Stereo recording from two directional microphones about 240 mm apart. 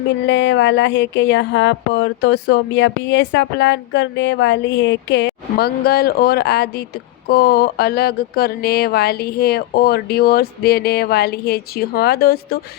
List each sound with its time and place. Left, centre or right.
0.3 s speech: left